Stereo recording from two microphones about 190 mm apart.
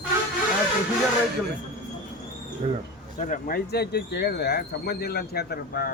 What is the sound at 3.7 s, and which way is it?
Speech, 60° left (ahead or behind).